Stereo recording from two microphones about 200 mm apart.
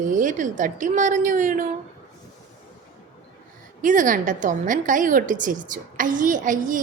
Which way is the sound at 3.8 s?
40° right (ahead or behind).